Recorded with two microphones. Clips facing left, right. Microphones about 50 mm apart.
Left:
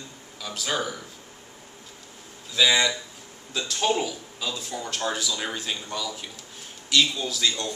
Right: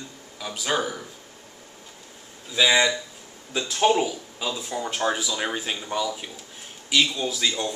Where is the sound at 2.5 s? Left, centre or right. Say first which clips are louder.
Right 2 dB; centre.